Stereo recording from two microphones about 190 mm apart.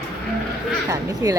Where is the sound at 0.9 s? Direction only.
20° right (ahead or behind).